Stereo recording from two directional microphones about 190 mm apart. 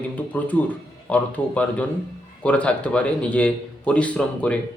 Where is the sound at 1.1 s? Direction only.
5° left (ahead or behind).